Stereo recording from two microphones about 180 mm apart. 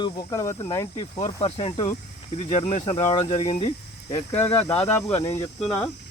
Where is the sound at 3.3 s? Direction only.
35° left (ahead or behind).